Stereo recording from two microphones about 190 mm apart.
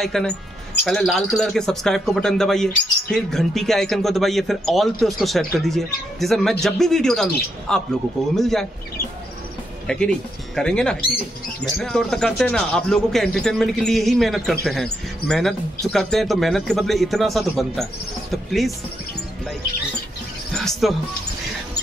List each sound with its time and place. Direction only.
0.0 s a man's voice: centre (ahead or behind)
9.8 s a man's voice: 5° left (ahead or behind)
20.5 s a man's voice: centre (ahead or behind)